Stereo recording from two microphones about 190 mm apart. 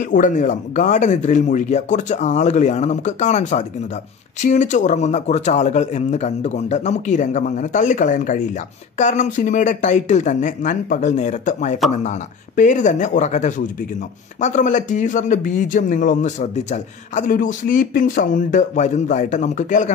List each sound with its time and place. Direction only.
0.0 s speech: 45° left (ahead or behind)